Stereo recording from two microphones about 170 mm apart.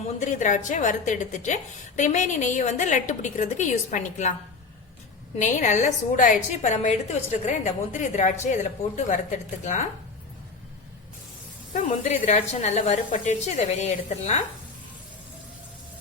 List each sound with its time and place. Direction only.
0.2 s a woman's voice: 45° left (ahead or behind)
5.4 s a woman's voice: 45° left (ahead or behind)
11.7 s a woman's voice: 50° left (ahead or behind)